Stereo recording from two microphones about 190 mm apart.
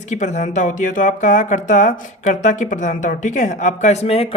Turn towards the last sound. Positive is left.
turn(degrees=35)  # may be behind; listen again after turning